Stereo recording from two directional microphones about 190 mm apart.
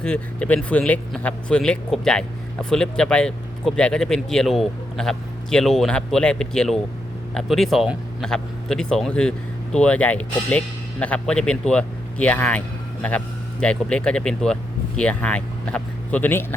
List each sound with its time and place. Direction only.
0.0 s speech: 5° left (ahead or behind)